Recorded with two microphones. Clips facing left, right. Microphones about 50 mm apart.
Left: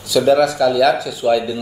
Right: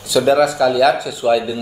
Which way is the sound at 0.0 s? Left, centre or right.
Centre.